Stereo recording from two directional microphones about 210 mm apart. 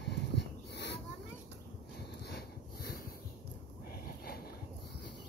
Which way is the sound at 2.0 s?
50° left (ahead or behind).